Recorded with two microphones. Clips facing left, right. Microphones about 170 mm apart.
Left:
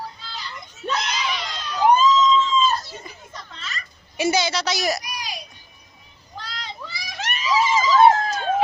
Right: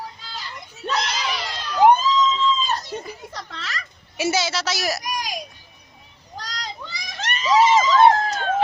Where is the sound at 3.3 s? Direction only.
80° right.